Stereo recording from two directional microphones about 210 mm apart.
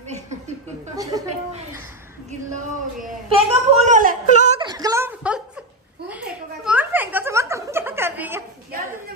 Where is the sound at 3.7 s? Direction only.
35° right (ahead or behind).